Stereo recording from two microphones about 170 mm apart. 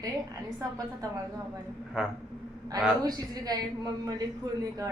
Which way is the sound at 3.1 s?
20° right (ahead or behind).